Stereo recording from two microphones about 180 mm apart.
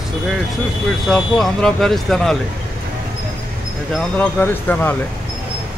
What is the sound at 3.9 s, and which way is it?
Speech, 5° left (ahead or behind).